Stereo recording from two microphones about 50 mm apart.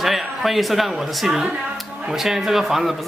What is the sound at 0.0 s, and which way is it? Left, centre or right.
Speech, centre.